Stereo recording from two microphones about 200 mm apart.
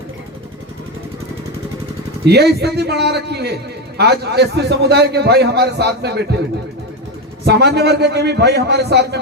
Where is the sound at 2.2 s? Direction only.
55° right (ahead or behind).